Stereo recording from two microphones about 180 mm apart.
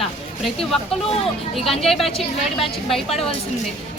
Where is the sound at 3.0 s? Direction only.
30° left (ahead or behind).